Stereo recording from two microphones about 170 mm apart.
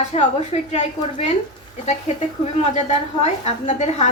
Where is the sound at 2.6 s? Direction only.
40° left (ahead or behind).